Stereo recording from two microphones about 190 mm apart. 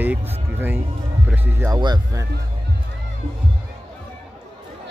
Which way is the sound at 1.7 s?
20° right (ahead or behind).